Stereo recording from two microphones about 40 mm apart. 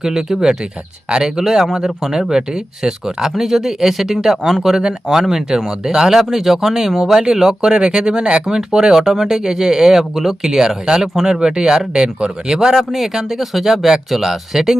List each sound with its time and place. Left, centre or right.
0.0 s speech: centre
12.5 s speech: centre